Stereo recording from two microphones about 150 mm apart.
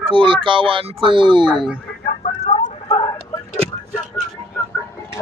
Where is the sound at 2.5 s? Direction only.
30° left (ahead or behind).